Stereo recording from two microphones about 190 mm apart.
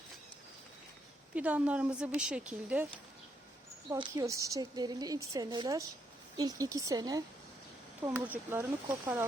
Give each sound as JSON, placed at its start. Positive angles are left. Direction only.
{"t": 1.4, "sound": "a woman's voice", "side_deg": -5}
{"t": 3.9, "sound": "a woman's voice", "side_deg": -20}